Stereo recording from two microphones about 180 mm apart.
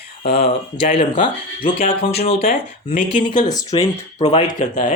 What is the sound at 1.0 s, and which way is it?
Speech, 30° left (ahead or behind).